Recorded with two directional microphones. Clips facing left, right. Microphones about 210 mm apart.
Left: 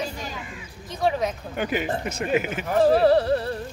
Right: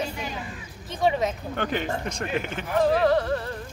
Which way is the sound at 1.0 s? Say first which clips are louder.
Even; 5° left (ahead or behind).